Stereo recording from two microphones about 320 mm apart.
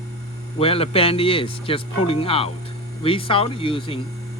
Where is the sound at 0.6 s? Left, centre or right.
Centre.